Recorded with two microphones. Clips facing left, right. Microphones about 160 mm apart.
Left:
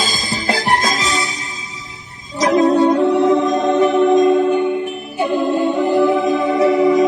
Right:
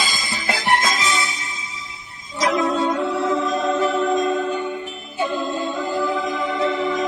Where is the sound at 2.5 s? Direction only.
25° left (ahead or behind).